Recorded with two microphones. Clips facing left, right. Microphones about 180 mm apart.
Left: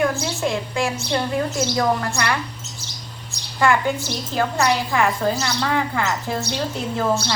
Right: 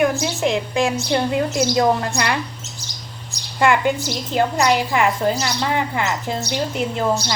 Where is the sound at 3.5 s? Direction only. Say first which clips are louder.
Right 2 dB; 20° right (ahead or behind).